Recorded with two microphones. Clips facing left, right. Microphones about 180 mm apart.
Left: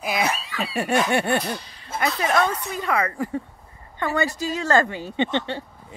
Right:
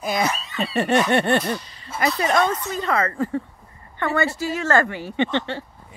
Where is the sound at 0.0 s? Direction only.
5° left (ahead or behind).